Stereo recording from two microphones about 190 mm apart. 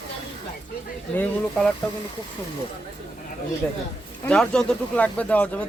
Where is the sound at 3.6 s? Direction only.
5° left (ahead or behind).